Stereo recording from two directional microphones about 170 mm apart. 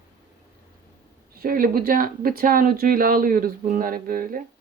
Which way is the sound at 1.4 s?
60° right (ahead or behind).